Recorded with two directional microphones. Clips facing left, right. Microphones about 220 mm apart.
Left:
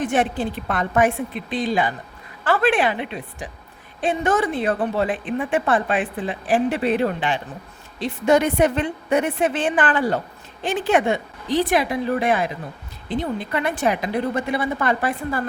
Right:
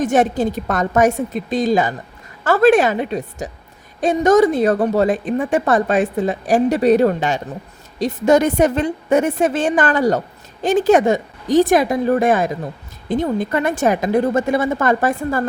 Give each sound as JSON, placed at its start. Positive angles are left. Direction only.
{"t": 0.0, "sound": "a woman's voice", "side_deg": -45}